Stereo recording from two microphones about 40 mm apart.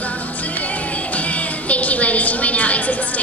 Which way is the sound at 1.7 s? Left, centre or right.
Left.